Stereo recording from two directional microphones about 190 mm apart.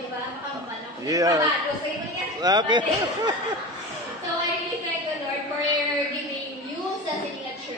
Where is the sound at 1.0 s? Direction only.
20° right (ahead or behind).